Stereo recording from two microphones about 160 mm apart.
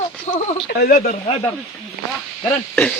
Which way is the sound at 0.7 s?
65° left (ahead or behind).